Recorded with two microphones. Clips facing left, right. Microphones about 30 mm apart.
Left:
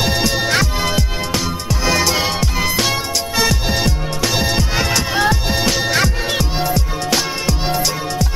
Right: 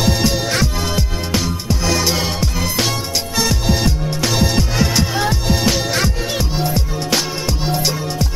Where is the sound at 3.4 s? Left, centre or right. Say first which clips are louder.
Even; centre.